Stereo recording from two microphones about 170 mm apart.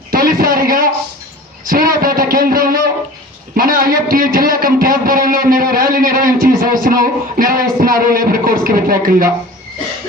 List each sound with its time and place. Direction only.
0.1 s a man's voice: 55° right (ahead or behind)
1.6 s a sound: 60° right (ahead or behind)
2.0 s a man's voice: 60° right (ahead or behind)